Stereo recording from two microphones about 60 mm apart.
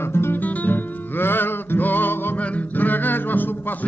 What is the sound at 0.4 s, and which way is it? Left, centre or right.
Music, left.